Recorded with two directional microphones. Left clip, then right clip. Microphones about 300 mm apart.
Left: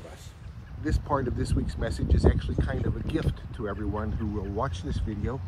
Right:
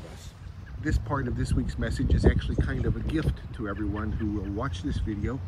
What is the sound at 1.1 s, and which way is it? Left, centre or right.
Speech, centre.